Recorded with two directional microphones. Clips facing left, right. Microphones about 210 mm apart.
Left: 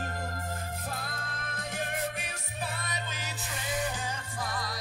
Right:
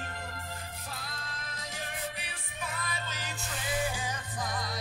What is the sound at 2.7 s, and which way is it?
Music, 25° left (ahead or behind).